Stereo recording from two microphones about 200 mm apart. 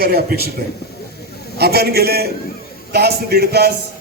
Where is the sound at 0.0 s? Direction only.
50° right (ahead or behind).